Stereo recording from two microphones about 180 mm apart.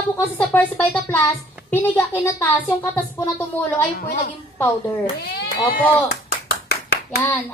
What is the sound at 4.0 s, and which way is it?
Speech, 50° left (ahead or behind).